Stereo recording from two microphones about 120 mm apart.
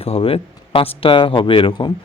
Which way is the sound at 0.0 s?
55° left (ahead or behind).